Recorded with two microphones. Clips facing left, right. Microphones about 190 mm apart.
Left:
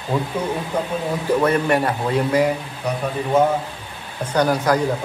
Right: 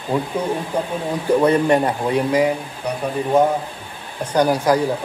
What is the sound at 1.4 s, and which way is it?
Speech, 20° right (ahead or behind).